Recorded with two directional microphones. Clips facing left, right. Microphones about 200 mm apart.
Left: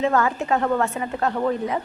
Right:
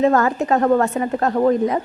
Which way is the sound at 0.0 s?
40° right (ahead or behind).